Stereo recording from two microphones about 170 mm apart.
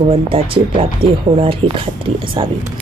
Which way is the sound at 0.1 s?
35° right (ahead or behind).